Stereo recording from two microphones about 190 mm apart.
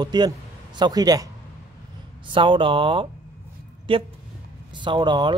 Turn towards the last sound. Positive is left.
turn(degrees=-25)  # may be behind; listen again after turning